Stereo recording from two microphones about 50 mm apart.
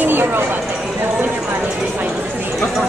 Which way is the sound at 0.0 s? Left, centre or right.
Right.